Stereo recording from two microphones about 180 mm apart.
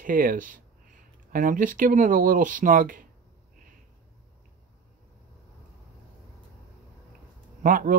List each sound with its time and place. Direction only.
0.0 s speech: 50° right (ahead or behind)
7.6 s speech: 50° right (ahead or behind)